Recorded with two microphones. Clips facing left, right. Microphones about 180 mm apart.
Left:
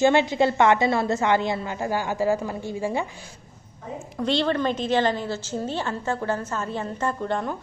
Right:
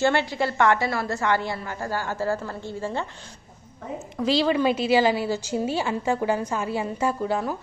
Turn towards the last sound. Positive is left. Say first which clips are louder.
# right 1 dB
turn(degrees=-5)  # may be behind; listen again after turning